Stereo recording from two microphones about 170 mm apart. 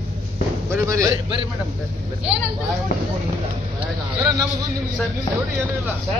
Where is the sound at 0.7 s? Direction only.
20° right (ahead or behind).